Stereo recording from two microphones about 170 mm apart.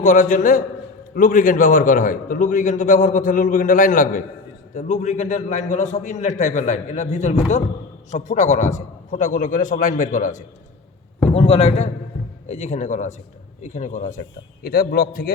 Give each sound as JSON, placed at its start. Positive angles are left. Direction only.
{"t": 0.0, "sound": "a man's voice", "side_deg": 50}
{"t": 11.3, "sound": "a man's voice", "side_deg": 35}
{"t": 14.6, "sound": "a man's voice", "side_deg": 60}